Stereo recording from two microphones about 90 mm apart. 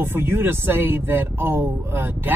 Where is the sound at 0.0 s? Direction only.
25° right (ahead or behind).